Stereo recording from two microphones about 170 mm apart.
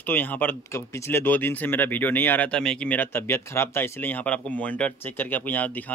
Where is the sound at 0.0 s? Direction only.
10° left (ahead or behind).